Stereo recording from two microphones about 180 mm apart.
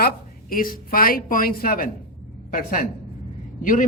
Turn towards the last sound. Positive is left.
turn(degrees=45)  # may be behind; listen again after turning